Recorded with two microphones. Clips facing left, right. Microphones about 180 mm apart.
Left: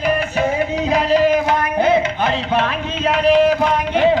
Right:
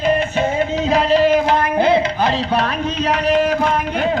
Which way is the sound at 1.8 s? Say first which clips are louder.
Left 1 dB; 30° right (ahead or behind).